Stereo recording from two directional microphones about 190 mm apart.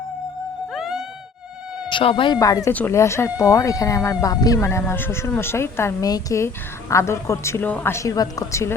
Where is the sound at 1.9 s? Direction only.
25° left (ahead or behind).